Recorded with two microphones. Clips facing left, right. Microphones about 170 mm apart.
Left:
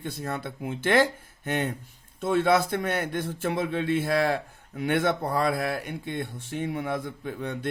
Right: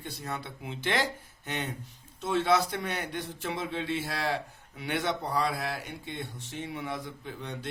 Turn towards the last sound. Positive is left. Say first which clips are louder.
# left 7 dB
turn(degrees=55)  # may be behind; listen again after turning